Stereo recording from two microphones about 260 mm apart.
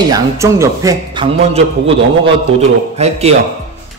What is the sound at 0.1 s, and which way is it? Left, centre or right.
Speech, centre.